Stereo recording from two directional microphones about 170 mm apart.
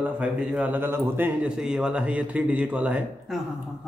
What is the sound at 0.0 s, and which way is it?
A man's voice, 5° right (ahead or behind).